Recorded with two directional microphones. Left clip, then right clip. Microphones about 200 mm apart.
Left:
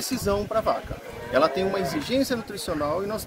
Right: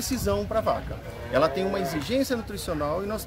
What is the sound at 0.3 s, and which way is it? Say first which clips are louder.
Speech: left 2 dB; 5° right (ahead or behind).